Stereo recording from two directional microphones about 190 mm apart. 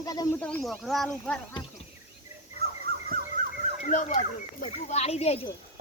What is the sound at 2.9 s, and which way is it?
Fowl, 55° right (ahead or behind).